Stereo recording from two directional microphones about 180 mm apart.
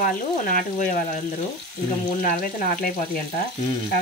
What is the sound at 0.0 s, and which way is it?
Stir, 50° left (ahead or behind).